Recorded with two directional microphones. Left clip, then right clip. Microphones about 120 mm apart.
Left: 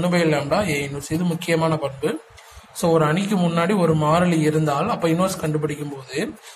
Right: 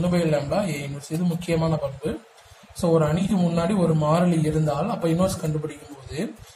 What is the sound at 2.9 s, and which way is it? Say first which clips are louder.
A man's voice: left 3 dB; 15° left (ahead or behind).